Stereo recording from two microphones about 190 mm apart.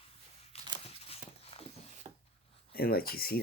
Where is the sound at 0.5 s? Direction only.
30° left (ahead or behind).